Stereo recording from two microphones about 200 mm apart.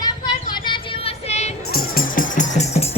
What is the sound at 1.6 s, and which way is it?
Music, 50° left (ahead or behind).